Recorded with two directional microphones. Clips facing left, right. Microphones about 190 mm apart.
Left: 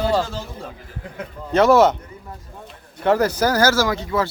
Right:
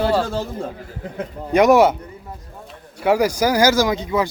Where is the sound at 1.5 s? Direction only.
15° right (ahead or behind).